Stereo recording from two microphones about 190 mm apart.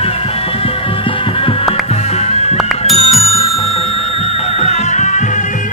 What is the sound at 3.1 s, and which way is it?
Bicycle bell, centre (ahead or behind).